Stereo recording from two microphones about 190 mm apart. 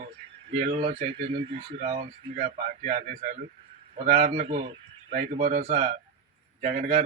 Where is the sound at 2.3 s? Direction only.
40° right (ahead or behind).